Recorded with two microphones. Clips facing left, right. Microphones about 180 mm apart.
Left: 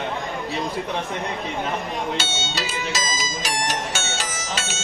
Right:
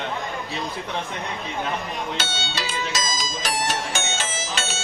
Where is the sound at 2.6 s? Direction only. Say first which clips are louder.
Even; 5° left (ahead or behind).